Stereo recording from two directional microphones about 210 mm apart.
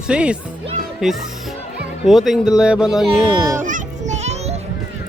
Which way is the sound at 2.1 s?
Centre (ahead or behind).